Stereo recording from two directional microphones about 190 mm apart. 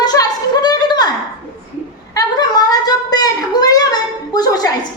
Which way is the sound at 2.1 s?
20° left (ahead or behind).